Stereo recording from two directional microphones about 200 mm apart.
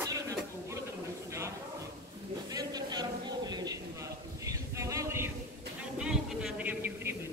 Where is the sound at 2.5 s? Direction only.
20° right (ahead or behind).